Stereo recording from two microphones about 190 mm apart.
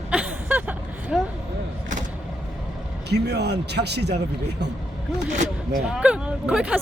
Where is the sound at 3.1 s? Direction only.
60° right (ahead or behind).